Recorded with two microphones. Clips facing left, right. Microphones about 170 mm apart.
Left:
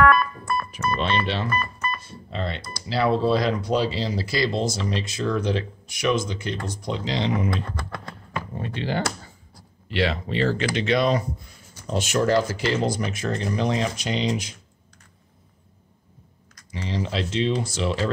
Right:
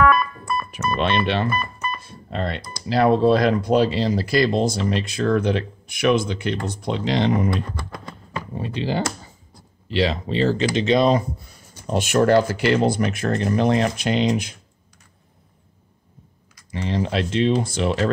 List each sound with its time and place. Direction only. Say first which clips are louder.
0.0 s keyboard: even; centre (ahead or behind)
0.9 s speech: right 5 dB; 65° right (ahead or behind)
1.5 s telephone dialing: right 1 dB; 10° right (ahead or behind)
2.0 s telephone dialing: right 3 dB; 50° right (ahead or behind)
2.9 s speech: right 5 dB; 50° right (ahead or behind)
8.5 s speech: right 3 dB; 15° right (ahead or behind)
10.1 s speech: right 3 dB; 25° right (ahead or behind)
11.9 s speech: right 4 dB; 55° right (ahead or behind)
16.7 s speech: right 4 dB; 55° right (ahead or behind)